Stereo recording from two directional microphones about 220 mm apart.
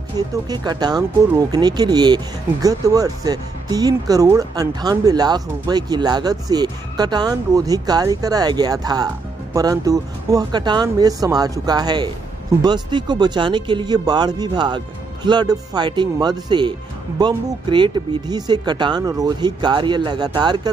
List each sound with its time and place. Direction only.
0.5 s speech: 20° right (ahead or behind)